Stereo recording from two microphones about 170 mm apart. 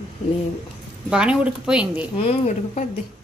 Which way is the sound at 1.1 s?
5° right (ahead or behind).